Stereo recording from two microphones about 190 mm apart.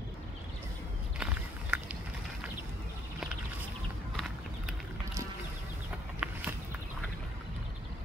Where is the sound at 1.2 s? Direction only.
5° right (ahead or behind).